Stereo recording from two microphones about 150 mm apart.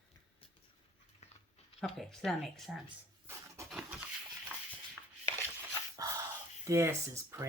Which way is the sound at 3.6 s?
20° right (ahead or behind).